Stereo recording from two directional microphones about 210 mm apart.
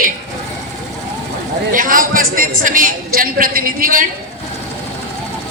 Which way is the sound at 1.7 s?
40° right (ahead or behind).